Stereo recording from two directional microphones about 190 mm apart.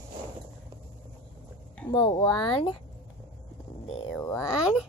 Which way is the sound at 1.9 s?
25° left (ahead or behind).